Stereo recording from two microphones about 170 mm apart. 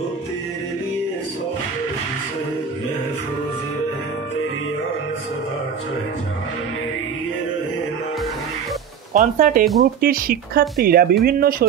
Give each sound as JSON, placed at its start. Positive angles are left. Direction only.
{"t": 9.1, "sound": "speech", "side_deg": -55}